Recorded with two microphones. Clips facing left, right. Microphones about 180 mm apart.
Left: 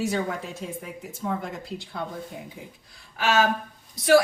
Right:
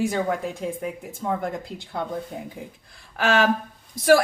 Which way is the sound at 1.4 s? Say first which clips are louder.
Right 4 dB; 55° right (ahead or behind).